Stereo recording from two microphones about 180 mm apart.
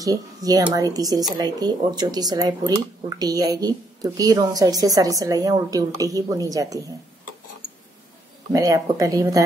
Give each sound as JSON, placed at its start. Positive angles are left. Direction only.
{"t": 0.0, "sound": "speech", "side_deg": -20}
{"t": 8.5, "sound": "speech", "side_deg": -20}